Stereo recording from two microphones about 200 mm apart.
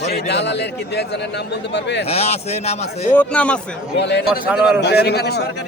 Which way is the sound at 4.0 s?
60° left (ahead or behind).